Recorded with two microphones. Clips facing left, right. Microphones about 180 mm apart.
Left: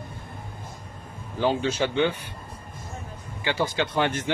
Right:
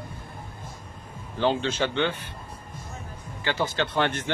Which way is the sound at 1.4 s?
10° left (ahead or behind).